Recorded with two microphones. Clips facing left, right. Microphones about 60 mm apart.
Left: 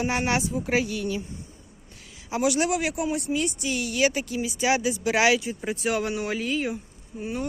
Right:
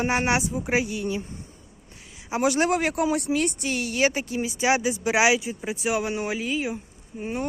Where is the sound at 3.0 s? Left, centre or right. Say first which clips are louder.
Right 3 dB; right.